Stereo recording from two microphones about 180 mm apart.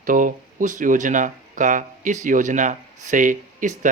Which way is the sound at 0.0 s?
50° right (ahead or behind).